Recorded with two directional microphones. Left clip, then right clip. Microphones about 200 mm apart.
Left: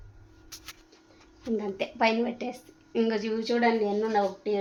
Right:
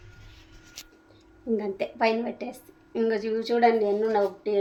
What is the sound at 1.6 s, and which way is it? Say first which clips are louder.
A woman's voice: even; 15° left (ahead or behind).